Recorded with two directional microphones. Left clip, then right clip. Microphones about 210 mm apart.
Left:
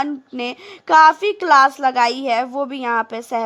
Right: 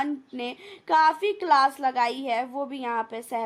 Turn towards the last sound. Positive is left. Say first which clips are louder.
# left 9 dB
turn(degrees=25)  # may be behind; listen again after turning